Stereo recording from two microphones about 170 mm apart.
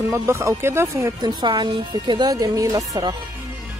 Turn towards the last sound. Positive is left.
turn(degrees=-20)  # may be behind; listen again after turning